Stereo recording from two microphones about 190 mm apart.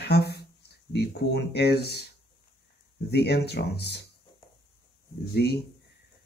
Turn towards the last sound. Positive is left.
turn(degrees=60)  # may be behind; listen again after turning